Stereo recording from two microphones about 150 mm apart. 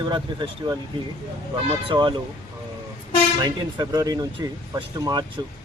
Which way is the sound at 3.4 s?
25° right (ahead or behind).